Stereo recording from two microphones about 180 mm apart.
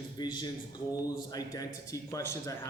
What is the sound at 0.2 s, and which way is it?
A man's voice, 25° left (ahead or behind).